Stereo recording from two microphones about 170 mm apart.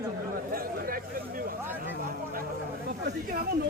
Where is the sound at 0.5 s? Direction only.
55° right (ahead or behind).